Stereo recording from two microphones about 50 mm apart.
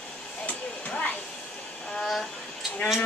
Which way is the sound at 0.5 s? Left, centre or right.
Left.